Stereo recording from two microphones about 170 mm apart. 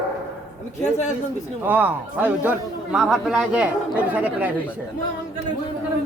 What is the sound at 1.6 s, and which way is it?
A man's voice, 10° right (ahead or behind).